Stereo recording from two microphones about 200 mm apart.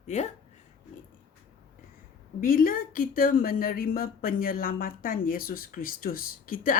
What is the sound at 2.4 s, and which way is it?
A woman's voice, 45° left (ahead or behind).